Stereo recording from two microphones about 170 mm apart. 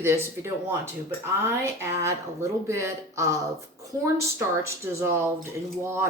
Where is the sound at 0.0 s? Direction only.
15° right (ahead or behind).